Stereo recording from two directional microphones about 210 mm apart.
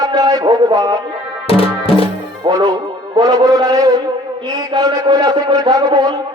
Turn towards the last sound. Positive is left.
turn(degrees=-20)  # may be behind; listen again after turning